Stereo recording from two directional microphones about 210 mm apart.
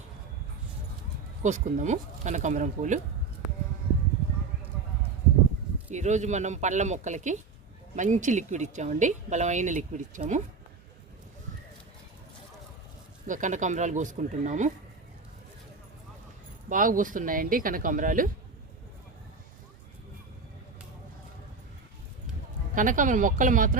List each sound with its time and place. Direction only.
1.4 s a woman's voice: 35° right (ahead or behind)
5.9 s a woman's voice: 35° right (ahead or behind)
13.2 s a woman's voice: 35° right (ahead or behind)
16.6 s a woman's voice: 40° right (ahead or behind)
22.7 s a woman's voice: 40° right (ahead or behind)